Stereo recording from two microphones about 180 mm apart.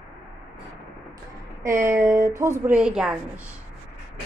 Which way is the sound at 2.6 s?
5° right (ahead or behind).